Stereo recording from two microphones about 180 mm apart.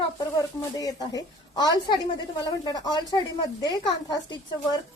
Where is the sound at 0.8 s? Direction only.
20° left (ahead or behind).